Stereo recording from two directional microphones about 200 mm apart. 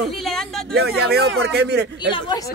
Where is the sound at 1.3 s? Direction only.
60° right (ahead or behind).